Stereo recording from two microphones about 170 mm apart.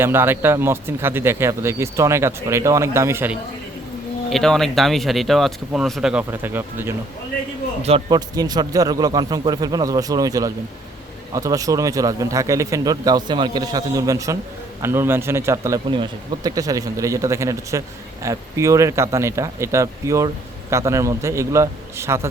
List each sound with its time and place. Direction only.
0.0 s speech: 15° right (ahead or behind)
4.3 s speech: centre (ahead or behind)
7.8 s speech: 40° right (ahead or behind)
8.1 s a man's voice: 25° right (ahead or behind)